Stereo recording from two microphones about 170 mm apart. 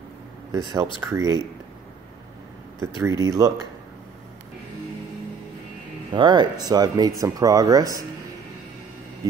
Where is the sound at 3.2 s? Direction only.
20° right (ahead or behind).